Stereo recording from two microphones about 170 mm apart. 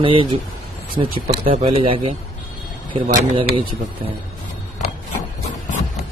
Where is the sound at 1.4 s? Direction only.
40° right (ahead or behind).